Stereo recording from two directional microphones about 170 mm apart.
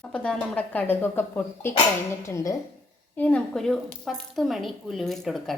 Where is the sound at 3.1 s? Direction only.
10° left (ahead or behind).